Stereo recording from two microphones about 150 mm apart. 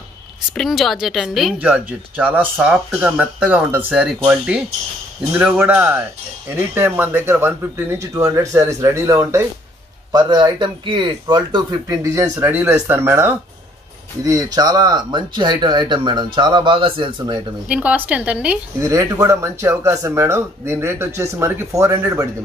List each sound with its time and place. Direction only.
0.6 s a woman's voice: centre (ahead or behind); by 17.4 s 35° right (ahead or behind)
17.6 s speech: 10° right (ahead or behind)
18.8 s speech: 20° right (ahead or behind)